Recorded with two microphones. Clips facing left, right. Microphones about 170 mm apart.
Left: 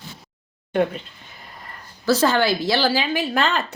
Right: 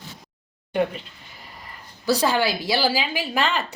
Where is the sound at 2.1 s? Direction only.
10° right (ahead or behind).